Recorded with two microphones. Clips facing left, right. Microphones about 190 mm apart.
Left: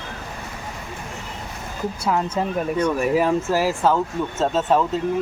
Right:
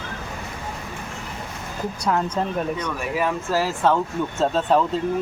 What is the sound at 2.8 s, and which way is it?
Speech, 30° left (ahead or behind).